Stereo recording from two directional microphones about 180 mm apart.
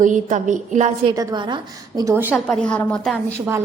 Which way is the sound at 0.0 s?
45° right (ahead or behind).